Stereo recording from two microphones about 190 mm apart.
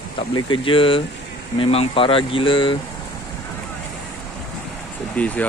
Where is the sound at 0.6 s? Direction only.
30° left (ahead or behind).